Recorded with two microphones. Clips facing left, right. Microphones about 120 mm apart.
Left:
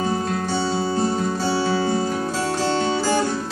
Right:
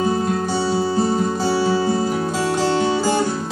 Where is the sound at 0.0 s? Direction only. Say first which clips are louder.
Right 3 dB; 15° right (ahead or behind).